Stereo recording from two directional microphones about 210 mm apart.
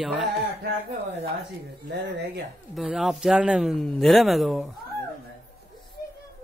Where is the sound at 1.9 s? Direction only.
55° right (ahead or behind).